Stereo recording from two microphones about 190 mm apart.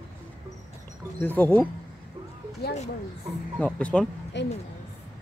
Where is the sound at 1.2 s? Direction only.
10° left (ahead or behind).